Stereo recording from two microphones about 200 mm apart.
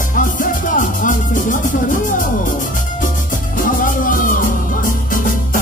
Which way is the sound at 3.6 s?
40° left (ahead or behind).